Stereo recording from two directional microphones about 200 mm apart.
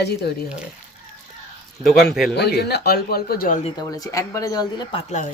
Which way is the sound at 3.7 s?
20° left (ahead or behind).